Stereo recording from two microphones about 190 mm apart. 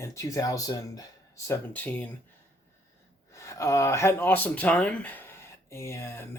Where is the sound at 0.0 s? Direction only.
15° left (ahead or behind).